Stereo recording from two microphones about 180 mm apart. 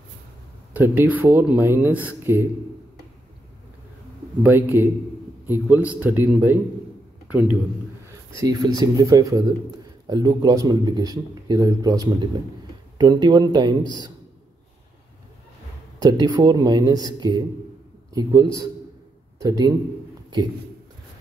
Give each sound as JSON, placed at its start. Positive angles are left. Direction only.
{"t": 0.7, "sound": "speech", "side_deg": -10}
{"t": 4.4, "sound": "a man's voice", "side_deg": -10}
{"t": 8.4, "sound": "a man's voice", "side_deg": -20}
{"t": 16.0, "sound": "a man's voice", "side_deg": -25}